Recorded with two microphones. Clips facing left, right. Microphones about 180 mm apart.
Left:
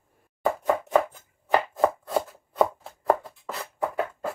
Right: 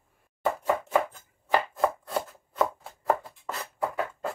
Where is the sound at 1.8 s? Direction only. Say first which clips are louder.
Left 4 dB; centre (ahead or behind).